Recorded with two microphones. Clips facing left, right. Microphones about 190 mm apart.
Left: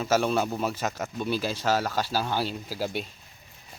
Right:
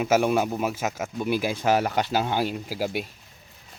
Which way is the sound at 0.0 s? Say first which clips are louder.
Right 3 dB; 15° right (ahead or behind).